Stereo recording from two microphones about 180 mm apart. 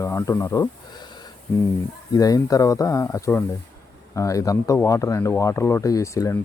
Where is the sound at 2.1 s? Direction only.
20° left (ahead or behind).